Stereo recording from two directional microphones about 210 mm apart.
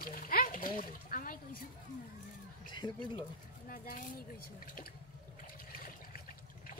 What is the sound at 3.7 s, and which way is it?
Speech, 40° left (ahead or behind).